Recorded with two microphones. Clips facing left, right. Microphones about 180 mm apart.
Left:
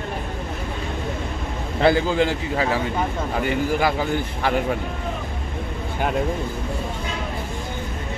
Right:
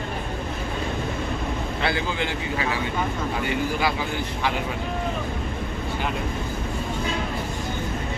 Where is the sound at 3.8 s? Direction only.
45° left (ahead or behind).